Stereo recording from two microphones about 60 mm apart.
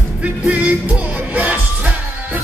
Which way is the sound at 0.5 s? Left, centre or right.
Right.